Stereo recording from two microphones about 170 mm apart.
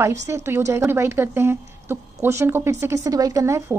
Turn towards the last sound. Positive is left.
turn(degrees=-15)  # may be behind; listen again after turning